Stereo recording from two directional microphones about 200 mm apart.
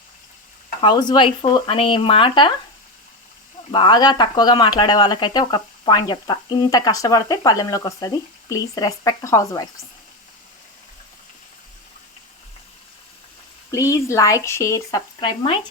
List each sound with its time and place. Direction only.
0.8 s speech: 20° left (ahead or behind)
3.7 s speech: 20° left (ahead or behind)
13.7 s speech: 15° left (ahead or behind)